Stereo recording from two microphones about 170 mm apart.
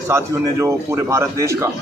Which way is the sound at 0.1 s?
15° right (ahead or behind).